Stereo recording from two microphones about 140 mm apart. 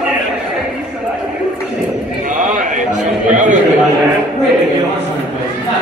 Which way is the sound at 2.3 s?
70° right (ahead or behind).